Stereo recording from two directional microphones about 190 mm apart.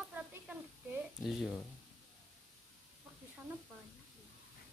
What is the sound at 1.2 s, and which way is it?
Speech, centre (ahead or behind).